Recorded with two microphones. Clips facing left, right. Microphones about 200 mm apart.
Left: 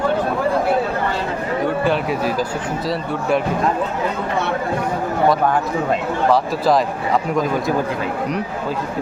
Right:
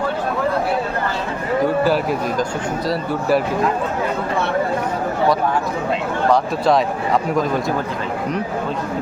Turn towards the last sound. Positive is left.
turn(degrees=0)  # may be behind; listen again after turning